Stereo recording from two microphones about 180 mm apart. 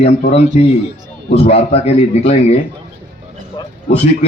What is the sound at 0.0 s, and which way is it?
A man's voice, 35° left (ahead or behind).